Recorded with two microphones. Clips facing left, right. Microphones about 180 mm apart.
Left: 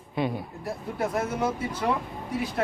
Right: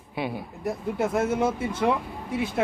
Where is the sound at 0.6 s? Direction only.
25° right (ahead or behind).